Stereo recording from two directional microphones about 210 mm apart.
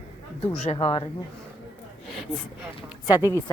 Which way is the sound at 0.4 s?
30° left (ahead or behind).